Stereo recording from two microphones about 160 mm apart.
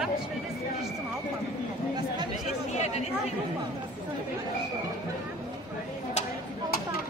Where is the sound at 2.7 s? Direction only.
45° left (ahead or behind).